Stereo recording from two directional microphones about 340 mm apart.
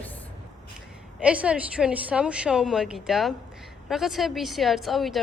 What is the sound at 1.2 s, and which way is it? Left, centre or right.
A woman's voice, centre.